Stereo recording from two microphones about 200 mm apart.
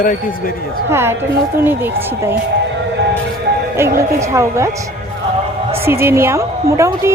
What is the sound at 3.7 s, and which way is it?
Speech, 15° right (ahead or behind).